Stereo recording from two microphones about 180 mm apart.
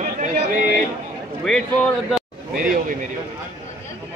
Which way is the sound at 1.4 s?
5° left (ahead or behind).